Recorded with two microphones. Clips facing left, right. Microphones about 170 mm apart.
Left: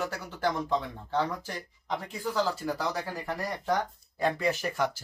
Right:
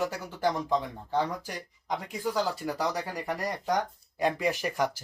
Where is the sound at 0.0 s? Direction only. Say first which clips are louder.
Right 2 dB; 15° right (ahead or behind).